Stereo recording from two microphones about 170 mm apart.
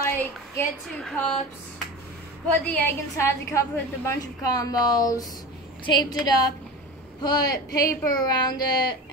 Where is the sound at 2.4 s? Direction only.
10° left (ahead or behind).